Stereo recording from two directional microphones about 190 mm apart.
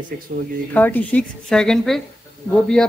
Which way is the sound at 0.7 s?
10° left (ahead or behind).